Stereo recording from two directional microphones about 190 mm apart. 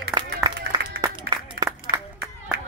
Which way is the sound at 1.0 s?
20° right (ahead or behind).